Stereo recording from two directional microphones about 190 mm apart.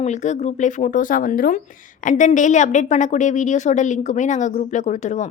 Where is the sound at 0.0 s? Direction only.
40° left (ahead or behind).